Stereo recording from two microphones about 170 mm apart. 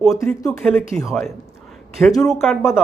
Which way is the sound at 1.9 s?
Centre (ahead or behind).